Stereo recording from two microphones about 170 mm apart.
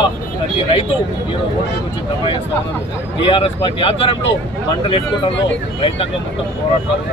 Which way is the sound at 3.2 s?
30° left (ahead or behind).